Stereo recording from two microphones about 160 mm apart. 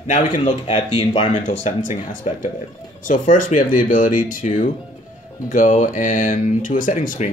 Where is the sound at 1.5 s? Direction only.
50° left (ahead or behind).